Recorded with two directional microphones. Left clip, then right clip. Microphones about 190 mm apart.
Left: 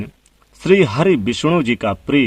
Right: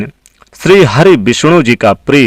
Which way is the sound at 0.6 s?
45° right (ahead or behind).